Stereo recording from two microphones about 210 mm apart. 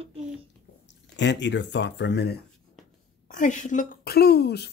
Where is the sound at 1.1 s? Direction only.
55° left (ahead or behind).